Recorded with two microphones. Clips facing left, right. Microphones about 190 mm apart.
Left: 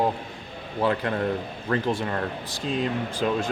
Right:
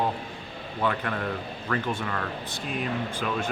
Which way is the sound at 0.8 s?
30° left (ahead or behind).